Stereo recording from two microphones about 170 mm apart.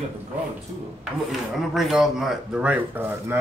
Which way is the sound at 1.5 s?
Centre (ahead or behind).